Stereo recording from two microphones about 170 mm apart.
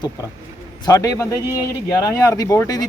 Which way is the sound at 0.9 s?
20° left (ahead or behind).